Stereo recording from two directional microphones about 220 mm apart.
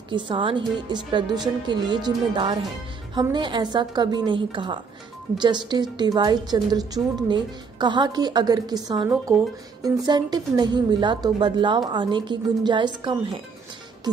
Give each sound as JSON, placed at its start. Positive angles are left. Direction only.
{"t": 0.1, "sound": "speech", "side_deg": -25}